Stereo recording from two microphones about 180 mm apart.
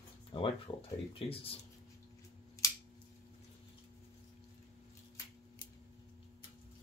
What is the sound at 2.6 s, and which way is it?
Scissors, 20° left (ahead or behind).